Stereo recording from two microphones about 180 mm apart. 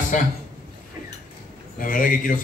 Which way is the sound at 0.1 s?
45° left (ahead or behind).